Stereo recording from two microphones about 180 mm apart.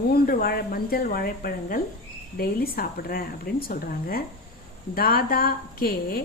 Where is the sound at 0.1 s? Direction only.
55° left (ahead or behind).